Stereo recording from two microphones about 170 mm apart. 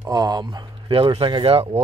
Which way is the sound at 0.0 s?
20° right (ahead or behind).